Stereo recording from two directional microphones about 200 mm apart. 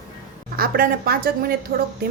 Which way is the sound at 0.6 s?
50° right (ahead or behind).